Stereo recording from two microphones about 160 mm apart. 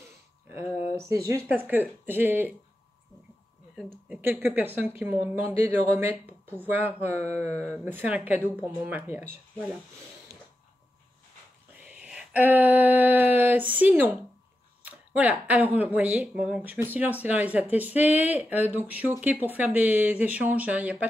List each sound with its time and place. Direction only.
0.9 s speech: 20° right (ahead or behind)
4.2 s speech: 15° right (ahead or behind)
10.3 s mechanisms: 20° right (ahead or behind)
11.9 s a sound: 5° right (ahead or behind)
13.4 s speech: 10° right (ahead or behind)